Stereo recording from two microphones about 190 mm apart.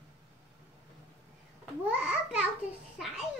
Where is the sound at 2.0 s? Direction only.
5° right (ahead or behind).